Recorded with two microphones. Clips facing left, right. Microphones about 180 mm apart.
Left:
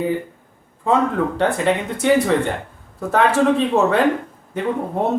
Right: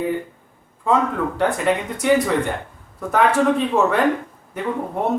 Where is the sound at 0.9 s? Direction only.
30° left (ahead or behind).